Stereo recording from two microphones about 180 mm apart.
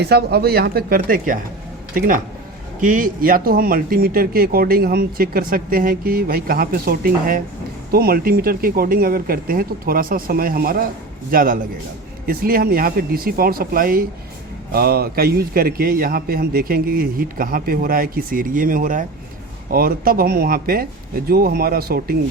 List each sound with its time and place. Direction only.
0.0 s a man's voice: 65° right (ahead or behind)